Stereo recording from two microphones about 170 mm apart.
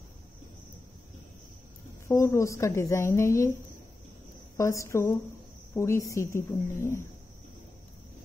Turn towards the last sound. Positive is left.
turn(degrees=15)  # may be behind; listen again after turning